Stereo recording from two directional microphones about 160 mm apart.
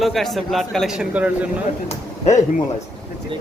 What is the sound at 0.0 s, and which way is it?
A man's voice, centre (ahead or behind).